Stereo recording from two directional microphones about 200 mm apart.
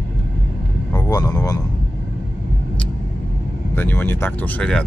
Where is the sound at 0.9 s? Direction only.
20° left (ahead or behind).